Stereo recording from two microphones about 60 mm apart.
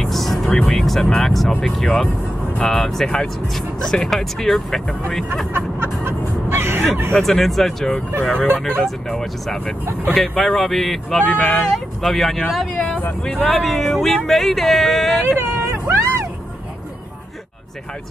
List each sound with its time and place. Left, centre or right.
0.0 s vehicle: centre
0.5 s speech: centre
5.5 s music: right
7.2 s speech: centre
11.1 s speech: left
11.7 s speech: centre
12.7 s speech: centre
13.5 s speech: centre
15.3 s speech: right
15.7 s music: right